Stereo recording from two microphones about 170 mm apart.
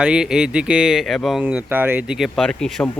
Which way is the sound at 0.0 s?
5° right (ahead or behind).